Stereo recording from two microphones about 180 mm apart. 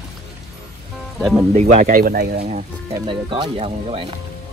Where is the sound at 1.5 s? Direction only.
50° right (ahead or behind).